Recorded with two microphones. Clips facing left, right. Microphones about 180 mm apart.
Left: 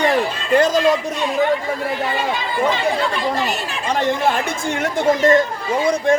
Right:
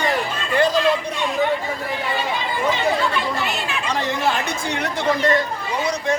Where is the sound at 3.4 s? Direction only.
45° left (ahead or behind).